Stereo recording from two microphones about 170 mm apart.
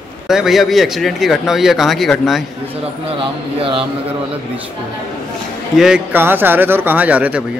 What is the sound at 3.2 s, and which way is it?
Speech, 30° right (ahead or behind).